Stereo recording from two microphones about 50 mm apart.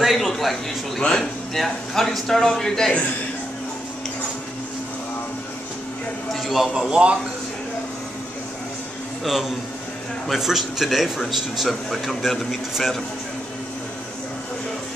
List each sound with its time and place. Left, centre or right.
0.0 s a man's voice: centre
6.4 s speech: centre
9.2 s a man's voice: centre